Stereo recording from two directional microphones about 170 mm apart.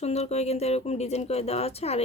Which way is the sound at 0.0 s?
40° left (ahead or behind).